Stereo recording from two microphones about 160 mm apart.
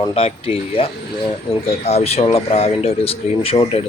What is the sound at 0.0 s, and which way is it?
Speech, 40° left (ahead or behind).